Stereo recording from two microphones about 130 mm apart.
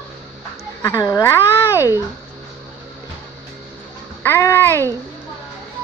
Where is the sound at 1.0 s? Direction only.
25° left (ahead or behind).